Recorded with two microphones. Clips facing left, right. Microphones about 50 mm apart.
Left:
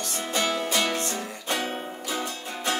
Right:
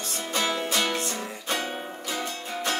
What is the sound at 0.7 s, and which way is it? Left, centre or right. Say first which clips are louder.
Music: left 1 dB; centre.